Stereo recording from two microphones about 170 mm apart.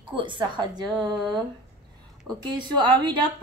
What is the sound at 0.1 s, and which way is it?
Speech, 30° right (ahead or behind).